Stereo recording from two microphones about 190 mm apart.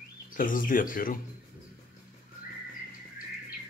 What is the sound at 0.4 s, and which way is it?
Speech, 45° left (ahead or behind).